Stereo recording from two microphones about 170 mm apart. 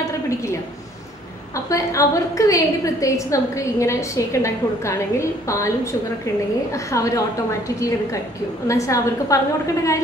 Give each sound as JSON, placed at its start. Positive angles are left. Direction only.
{"t": 1.7, "sound": "a woman's voice", "side_deg": 20}
{"t": 6.9, "sound": "a woman's voice", "side_deg": 20}
{"t": 8.6, "sound": "a woman's voice", "side_deg": 20}